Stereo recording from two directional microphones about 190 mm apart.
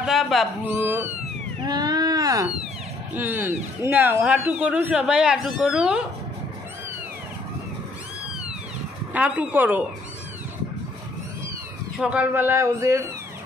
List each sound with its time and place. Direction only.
0.0 s speech: centre (ahead or behind)
0.7 s speech: 10° right (ahead or behind)
1.6 s a sound: 20° right (ahead or behind)
3.2 s speech: 10° right (ahead or behind)
9.1 s speech: 5° right (ahead or behind)
12.0 s speech: 5° right (ahead or behind)